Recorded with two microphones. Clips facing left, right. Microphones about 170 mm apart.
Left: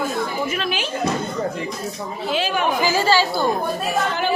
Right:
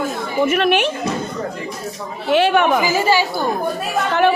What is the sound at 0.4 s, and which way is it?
Speech, 65° right (ahead or behind).